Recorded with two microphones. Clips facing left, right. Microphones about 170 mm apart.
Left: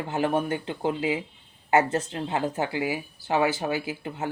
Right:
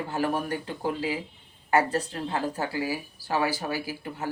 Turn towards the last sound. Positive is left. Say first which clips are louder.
# left 2 dB
turn(degrees=20)  # may be behind; listen again after turning